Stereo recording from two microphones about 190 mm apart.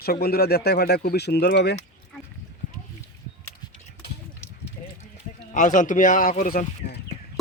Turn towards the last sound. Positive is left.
turn(degrees=50)  # may be behind; listen again after turning